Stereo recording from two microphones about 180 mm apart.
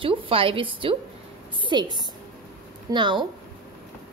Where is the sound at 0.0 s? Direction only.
30° right (ahead or behind).